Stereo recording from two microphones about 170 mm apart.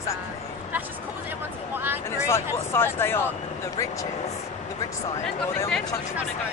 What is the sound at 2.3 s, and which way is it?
Speech, 15° left (ahead or behind).